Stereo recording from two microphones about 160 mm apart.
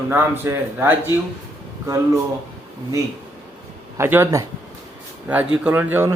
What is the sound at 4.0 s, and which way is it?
Speech, 15° right (ahead or behind).